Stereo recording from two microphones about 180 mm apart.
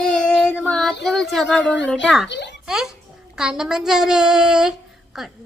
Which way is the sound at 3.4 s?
5° right (ahead or behind).